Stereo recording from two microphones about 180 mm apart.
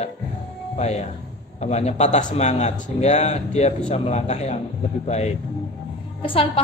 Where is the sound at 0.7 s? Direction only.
35° left (ahead or behind).